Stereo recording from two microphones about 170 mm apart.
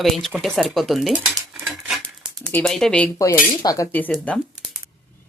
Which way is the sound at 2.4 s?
5° left (ahead or behind).